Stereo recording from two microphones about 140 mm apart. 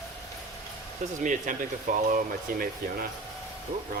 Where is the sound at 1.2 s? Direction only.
70° right (ahead or behind).